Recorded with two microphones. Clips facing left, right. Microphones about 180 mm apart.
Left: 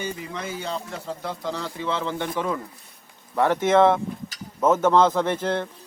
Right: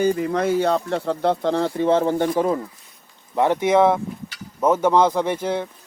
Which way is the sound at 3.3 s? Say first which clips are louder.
Right 2 dB; 15° right (ahead or behind).